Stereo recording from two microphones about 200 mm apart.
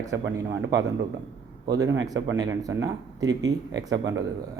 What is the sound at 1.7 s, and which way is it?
Speech, 15° right (ahead or behind).